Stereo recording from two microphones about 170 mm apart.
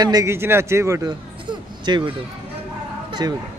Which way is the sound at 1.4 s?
25° right (ahead or behind).